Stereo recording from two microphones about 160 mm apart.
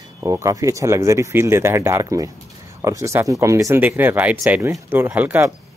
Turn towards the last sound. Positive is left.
turn(degrees=-10)  # may be behind; listen again after turning